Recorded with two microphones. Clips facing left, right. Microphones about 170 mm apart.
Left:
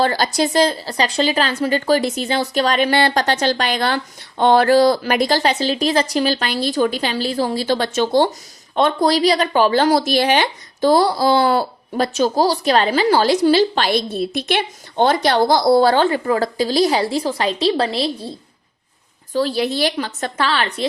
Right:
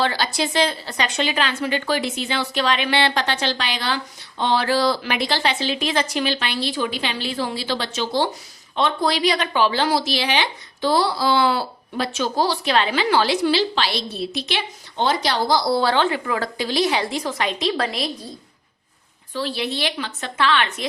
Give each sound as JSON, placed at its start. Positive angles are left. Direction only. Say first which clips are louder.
{"t": 0.0, "sound": "speech", "louder": "left 5 dB", "side_deg": 45}
{"t": 19.3, "sound": "a woman's voice", "louder": "left 7 dB", "side_deg": 40}